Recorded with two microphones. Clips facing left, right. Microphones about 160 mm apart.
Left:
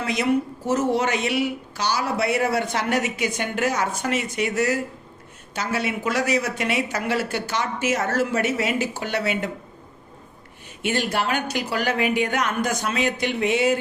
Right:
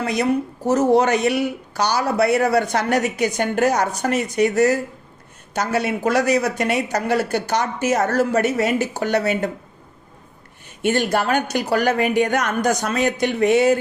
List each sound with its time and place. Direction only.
0.0 s speech: 40° right (ahead or behind)
10.8 s a woman's voice: 45° right (ahead or behind)